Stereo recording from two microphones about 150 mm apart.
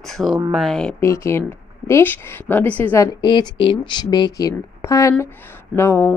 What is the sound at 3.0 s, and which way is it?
A woman's voice, 30° left (ahead or behind).